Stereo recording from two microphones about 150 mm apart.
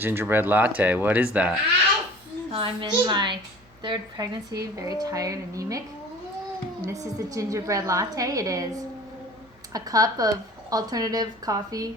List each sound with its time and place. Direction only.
0.0 s speech: 15° right (ahead or behind)
2.5 s a woman's voice: 35° right (ahead or behind)
6.8 s a woman's voice: 20° right (ahead or behind)